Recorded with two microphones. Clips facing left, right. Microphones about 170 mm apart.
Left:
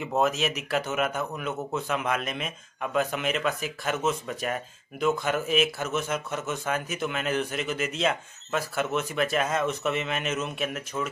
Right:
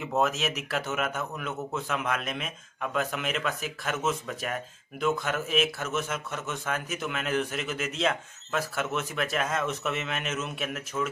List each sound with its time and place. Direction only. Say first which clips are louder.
0.2 s speech: left 2 dB; centre (ahead or behind)